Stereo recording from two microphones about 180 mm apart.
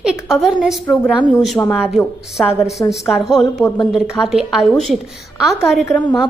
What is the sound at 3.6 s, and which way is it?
Speech, 25° left (ahead or behind).